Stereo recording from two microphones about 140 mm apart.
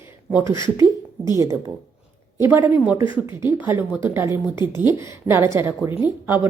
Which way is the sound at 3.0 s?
35° left (ahead or behind).